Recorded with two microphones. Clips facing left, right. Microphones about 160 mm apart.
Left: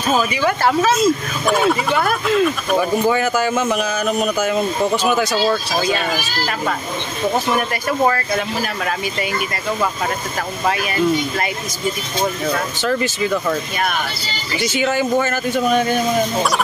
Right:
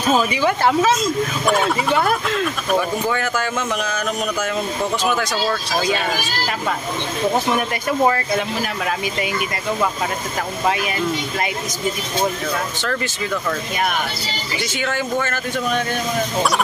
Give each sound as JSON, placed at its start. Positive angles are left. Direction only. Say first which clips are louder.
{"t": 0.4, "sound": "speech", "louder": "even", "side_deg": -15}
{"t": 0.9, "sound": "speech", "louder": "left 3 dB", "side_deg": 5}
{"t": 12.8, "sound": "speech", "louder": "left 5 dB", "side_deg": 10}
{"t": 14.6, "sound": "speech", "louder": "left 6 dB", "side_deg": 5}